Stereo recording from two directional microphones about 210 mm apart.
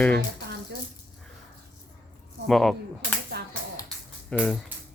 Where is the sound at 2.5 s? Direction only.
Centre (ahead or behind).